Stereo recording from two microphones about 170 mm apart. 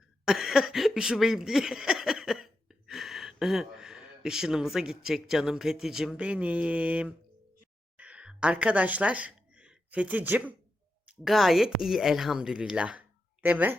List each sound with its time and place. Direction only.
0.3 s speech: centre (ahead or behind)
7.9 s a sound: 5° right (ahead or behind)
11.2 s speech: centre (ahead or behind)